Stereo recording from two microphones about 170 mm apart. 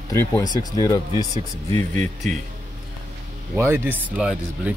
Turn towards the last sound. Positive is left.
turn(degrees=-5)  # may be behind; listen again after turning